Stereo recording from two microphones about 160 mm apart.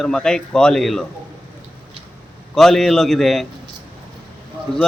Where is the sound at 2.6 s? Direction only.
Centre (ahead or behind).